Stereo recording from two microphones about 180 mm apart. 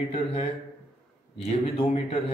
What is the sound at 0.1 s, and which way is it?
A man's voice, 35° left (ahead or behind).